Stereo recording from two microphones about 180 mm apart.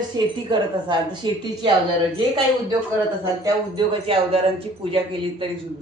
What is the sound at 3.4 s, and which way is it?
Speech, 30° right (ahead or behind).